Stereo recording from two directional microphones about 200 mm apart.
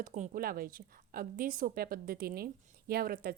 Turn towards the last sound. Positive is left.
turn(degrees=-50)  # may be behind; listen again after turning